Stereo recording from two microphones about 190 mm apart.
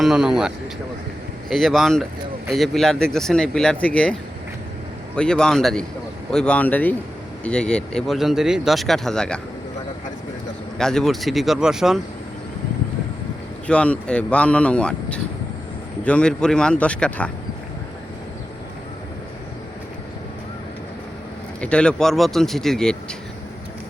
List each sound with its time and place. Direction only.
0.0 s speech: 5° right (ahead or behind)
5.1 s speech: 5° left (ahead or behind)
10.8 s speech: 5° left (ahead or behind)
13.7 s speech: 5° left (ahead or behind)
21.6 s speech: 5° left (ahead or behind)